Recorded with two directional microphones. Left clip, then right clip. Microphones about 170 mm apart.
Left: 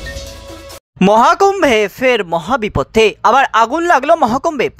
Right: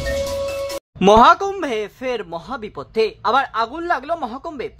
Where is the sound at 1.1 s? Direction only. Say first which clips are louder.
Left 2 dB; 45° left (ahead or behind).